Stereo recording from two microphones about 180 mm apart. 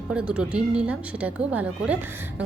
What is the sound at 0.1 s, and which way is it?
A woman's voice, 5° right (ahead or behind).